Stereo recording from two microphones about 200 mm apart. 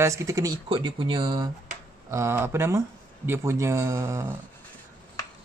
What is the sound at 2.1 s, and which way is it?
Speech, 15° right (ahead or behind).